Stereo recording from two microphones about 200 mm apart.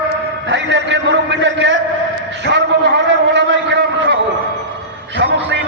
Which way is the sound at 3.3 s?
60° right (ahead or behind).